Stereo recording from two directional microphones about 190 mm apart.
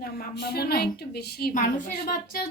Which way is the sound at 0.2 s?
55° left (ahead or behind).